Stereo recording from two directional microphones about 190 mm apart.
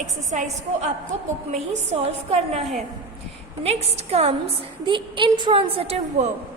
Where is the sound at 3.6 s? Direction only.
35° right (ahead or behind).